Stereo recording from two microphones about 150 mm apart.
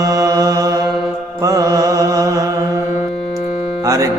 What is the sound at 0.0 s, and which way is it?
Mantra, 20° right (ahead or behind).